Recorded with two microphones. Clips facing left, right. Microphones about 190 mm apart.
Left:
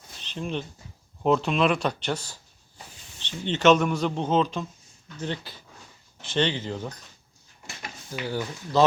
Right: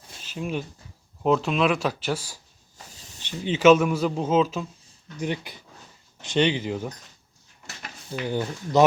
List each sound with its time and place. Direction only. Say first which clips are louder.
0.2 s a sound: right 1 dB; 5° right (ahead or behind)
1.2 s a man's voice: even; centre (ahead or behind)
5.2 s speech: right 3 dB; 15° right (ahead or behind)
8.3 s speech: right 4 dB; 20° right (ahead or behind)